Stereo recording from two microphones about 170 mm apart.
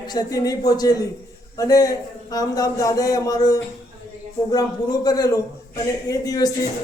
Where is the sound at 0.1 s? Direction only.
20° left (ahead or behind).